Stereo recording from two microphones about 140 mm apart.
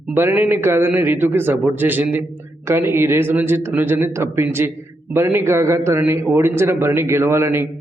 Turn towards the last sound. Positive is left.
turn(degrees=-15)  # may be behind; listen again after turning